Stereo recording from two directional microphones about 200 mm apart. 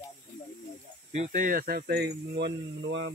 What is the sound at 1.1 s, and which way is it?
Speech, 35° right (ahead or behind).